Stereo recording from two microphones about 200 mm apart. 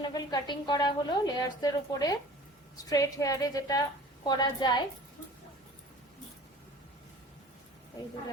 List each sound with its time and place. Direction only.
0.0 s a woman's voice: 20° left (ahead or behind)